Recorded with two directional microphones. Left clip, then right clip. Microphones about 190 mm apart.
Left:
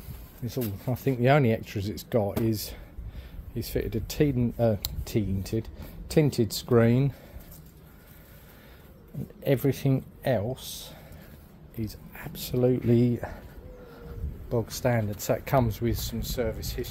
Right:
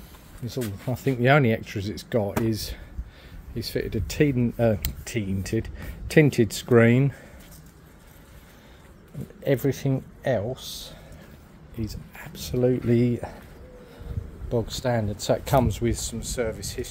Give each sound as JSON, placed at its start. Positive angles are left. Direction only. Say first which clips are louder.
{"t": 0.5, "sound": "speech", "louder": "right 2 dB", "side_deg": 0}
{"t": 9.4, "sound": "speech", "louder": "right 2 dB", "side_deg": 5}
{"t": 14.8, "sound": "speech", "louder": "right 1 dB", "side_deg": -15}